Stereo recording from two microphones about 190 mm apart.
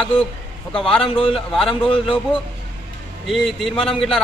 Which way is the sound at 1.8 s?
25° left (ahead or behind).